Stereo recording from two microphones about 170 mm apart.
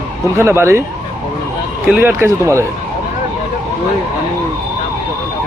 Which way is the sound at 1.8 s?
10° right (ahead or behind).